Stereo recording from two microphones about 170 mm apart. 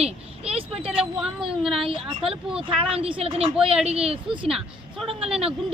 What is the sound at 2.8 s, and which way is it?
Speech, 35° right (ahead or behind).